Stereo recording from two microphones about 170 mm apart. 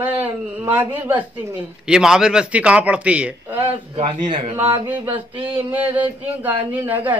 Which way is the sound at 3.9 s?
35° right (ahead or behind).